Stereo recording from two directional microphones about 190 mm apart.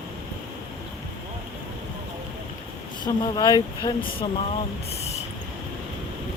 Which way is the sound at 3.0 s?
25° left (ahead or behind).